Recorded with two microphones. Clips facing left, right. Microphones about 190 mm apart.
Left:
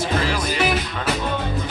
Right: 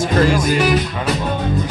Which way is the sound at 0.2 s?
45° right (ahead or behind).